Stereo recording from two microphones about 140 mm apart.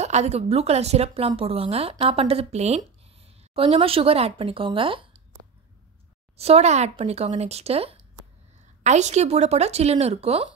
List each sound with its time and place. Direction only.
0.0 s a woman's voice: 50° right (ahead or behind)
6.3 s a woman's voice: 45° right (ahead or behind)
8.8 s a woman's voice: 55° right (ahead or behind)